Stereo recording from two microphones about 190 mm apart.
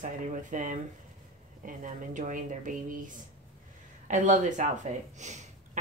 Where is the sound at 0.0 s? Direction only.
40° right (ahead or behind).